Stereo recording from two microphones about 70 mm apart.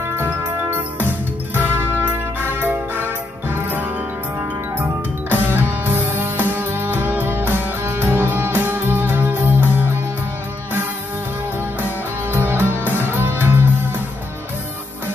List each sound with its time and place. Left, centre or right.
0.1 s music: right
5.3 s music: right
12.3 s music: right